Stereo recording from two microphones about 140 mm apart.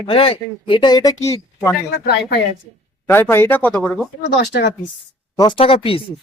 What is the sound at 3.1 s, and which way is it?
Speech, 15° left (ahead or behind).